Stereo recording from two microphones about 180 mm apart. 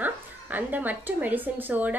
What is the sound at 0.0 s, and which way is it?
A woman's voice, 10° right (ahead or behind).